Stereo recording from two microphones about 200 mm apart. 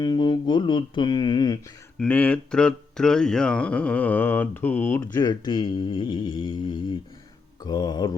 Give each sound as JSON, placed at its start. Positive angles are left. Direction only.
{"t": 0.0, "sound": "speech", "side_deg": 20}
{"t": 2.0, "sound": "speech", "side_deg": 5}
{"t": 5.1, "sound": "speech", "side_deg": 20}